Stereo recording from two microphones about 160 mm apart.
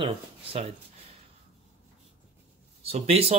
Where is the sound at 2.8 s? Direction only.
40° right (ahead or behind).